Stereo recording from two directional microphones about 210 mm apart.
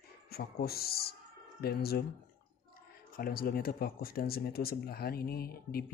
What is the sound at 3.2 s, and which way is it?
Speech, 45° left (ahead or behind).